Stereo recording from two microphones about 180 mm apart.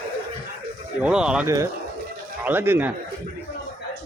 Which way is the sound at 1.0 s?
5° right (ahead or behind).